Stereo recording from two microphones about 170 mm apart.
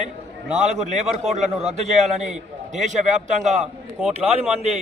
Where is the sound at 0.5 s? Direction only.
40° right (ahead or behind).